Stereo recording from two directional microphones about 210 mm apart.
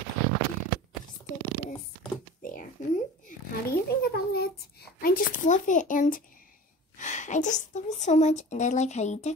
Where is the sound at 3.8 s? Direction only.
50° left (ahead or behind); by 9.3 s 35° left (ahead or behind).